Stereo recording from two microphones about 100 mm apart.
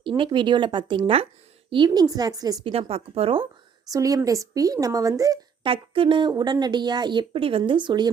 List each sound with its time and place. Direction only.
0.0 s speech: 55° right (ahead or behind)
1.7 s a woman's voice: 45° right (ahead or behind)
2.9 s speech: 70° right (ahead or behind)
3.9 s a woman's voice: 35° right (ahead or behind)
5.6 s speech: 65° right (ahead or behind)
6.3 s speech: 45° right (ahead or behind); by 7.6 s 65° right (ahead or behind)
7.6 s speech: 50° right (ahead or behind)